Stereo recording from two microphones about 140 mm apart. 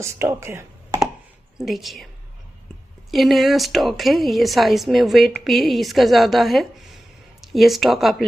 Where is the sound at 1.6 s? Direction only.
Centre (ahead or behind).